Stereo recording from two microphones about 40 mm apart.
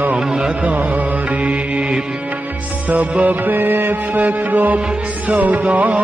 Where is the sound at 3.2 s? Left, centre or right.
Right.